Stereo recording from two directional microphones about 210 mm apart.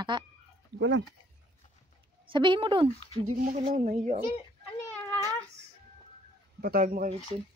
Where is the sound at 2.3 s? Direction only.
25° right (ahead or behind).